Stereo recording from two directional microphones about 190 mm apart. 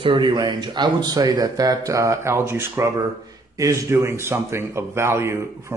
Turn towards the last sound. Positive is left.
turn(degrees=-15)  # may be behind; listen again after turning